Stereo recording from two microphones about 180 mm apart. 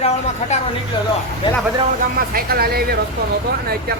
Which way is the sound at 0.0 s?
40° left (ahead or behind).